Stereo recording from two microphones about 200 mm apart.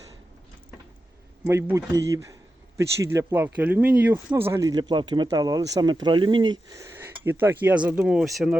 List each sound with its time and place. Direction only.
1.5 s speech: 15° right (ahead or behind)